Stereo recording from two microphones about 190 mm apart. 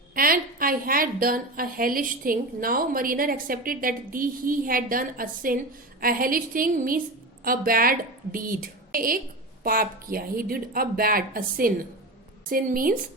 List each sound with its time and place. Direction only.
0.1 s a woman's voice: 50° right (ahead or behind)